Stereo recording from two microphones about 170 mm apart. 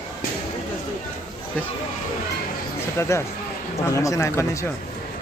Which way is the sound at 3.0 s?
15° left (ahead or behind).